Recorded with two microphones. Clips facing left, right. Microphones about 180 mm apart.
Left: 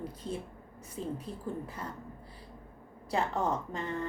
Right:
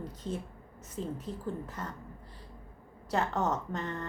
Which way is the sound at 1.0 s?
30° right (ahead or behind).